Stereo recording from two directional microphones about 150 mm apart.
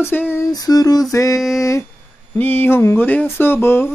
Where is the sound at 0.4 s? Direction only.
25° left (ahead or behind).